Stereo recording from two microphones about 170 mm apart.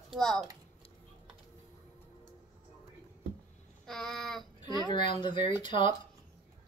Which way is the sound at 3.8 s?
Centre (ahead or behind).